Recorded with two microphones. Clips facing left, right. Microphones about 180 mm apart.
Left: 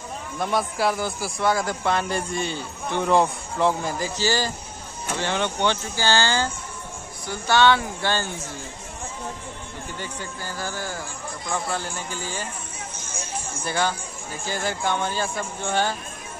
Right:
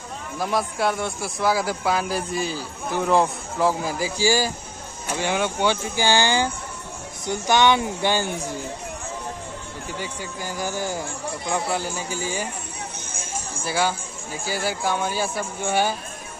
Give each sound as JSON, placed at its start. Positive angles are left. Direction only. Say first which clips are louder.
{"t": 0.4, "sound": "speech", "louder": "even", "side_deg": 0}
{"t": 9.9, "sound": "speech", "louder": "right 3 dB", "side_deg": -10}
{"t": 13.1, "sound": "a sound", "louder": "even", "side_deg": -50}
{"t": 13.7, "sound": "speech", "louder": "right 2 dB", "side_deg": -10}